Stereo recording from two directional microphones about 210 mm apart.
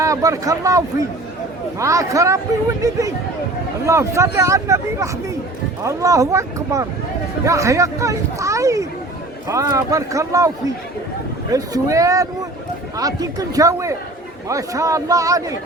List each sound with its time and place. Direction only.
0.0 s speech: 15° right (ahead or behind)
11.5 s speech: 15° right (ahead or behind)